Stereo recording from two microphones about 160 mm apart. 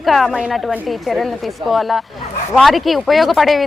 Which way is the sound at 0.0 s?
Centre (ahead or behind).